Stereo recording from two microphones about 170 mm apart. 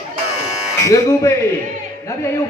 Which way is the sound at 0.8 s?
20° left (ahead or behind).